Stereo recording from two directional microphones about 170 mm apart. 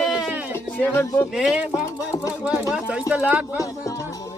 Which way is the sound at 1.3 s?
5° right (ahead or behind).